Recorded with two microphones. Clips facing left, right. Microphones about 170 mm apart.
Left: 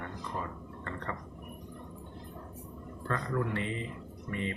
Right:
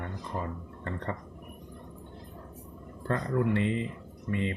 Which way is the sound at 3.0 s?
25° right (ahead or behind).